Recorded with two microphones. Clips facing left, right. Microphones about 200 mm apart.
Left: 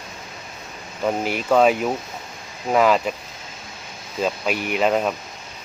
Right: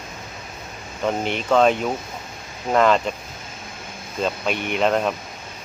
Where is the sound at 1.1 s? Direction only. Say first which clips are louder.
Left 1 dB; 5° left (ahead or behind).